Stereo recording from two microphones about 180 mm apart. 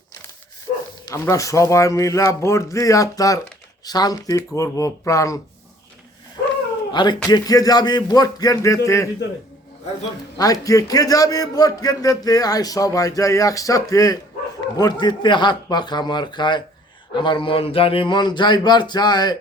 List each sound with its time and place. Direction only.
1.0 s speech: 15° left (ahead or behind)
6.9 s a man's voice: 25° left (ahead or behind)
10.3 s a man's voice: 20° left (ahead or behind)